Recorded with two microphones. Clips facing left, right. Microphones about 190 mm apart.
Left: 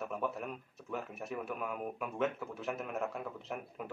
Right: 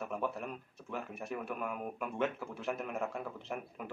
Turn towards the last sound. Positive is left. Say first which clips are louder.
# right 1 dB
turn(degrees=0)  # may be behind; listen again after turning